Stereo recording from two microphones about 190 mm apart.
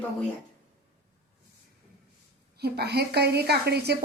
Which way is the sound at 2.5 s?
60° right (ahead or behind).